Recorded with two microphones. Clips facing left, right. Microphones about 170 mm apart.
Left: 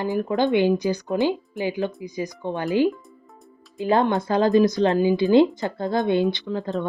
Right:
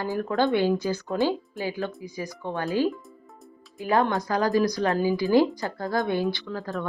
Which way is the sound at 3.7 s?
25° left (ahead or behind).